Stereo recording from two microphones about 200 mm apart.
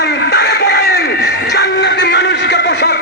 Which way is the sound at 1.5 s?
55° left (ahead or behind).